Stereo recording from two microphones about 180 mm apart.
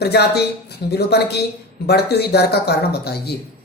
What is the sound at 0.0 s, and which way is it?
A woman's voice, 65° left (ahead or behind).